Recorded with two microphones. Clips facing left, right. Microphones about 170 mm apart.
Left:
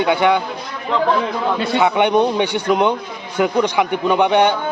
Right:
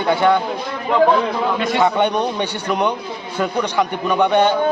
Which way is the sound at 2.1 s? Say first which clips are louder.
Left 5 dB; 20° left (ahead or behind).